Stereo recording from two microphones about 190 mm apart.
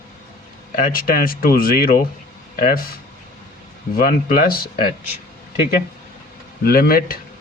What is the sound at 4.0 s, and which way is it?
Speech, 45° left (ahead or behind).